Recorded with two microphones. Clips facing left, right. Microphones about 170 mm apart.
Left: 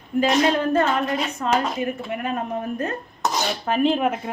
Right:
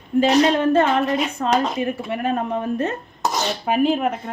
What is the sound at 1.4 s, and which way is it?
Speech, 45° right (ahead or behind).